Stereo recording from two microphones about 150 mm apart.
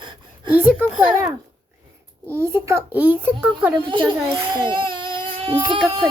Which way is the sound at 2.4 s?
15° right (ahead or behind).